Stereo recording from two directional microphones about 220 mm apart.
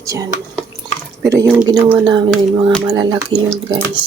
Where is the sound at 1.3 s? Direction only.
10° right (ahead or behind).